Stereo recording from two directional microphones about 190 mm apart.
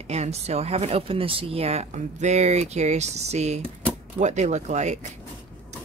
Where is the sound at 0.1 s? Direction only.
35° right (ahead or behind).